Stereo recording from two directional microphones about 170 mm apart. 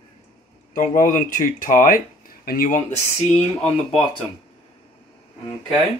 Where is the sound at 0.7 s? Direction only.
50° left (ahead or behind).